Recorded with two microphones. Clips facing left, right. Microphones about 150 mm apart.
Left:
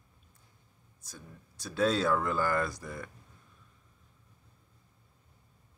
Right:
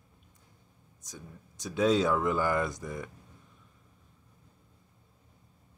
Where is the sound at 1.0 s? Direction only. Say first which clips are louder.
Right 3 dB; 20° right (ahead or behind).